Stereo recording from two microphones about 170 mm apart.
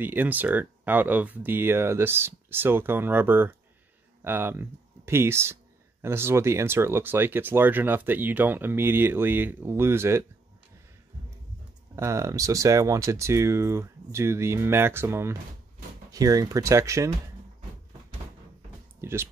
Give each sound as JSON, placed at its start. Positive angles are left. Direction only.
{"t": 0.0, "sound": "speech", "side_deg": -10}
{"t": 11.9, "sound": "speech", "side_deg": -15}
{"t": 18.9, "sound": "a sound", "side_deg": -15}